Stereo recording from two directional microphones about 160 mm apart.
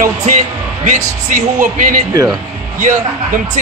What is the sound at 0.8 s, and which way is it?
A man's voice, 55° right (ahead or behind).